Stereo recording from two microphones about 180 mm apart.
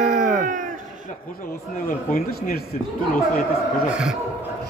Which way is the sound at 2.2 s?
55° left (ahead or behind).